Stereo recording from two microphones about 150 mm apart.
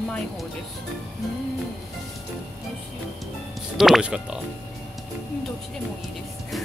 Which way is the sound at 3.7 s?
Centre (ahead or behind).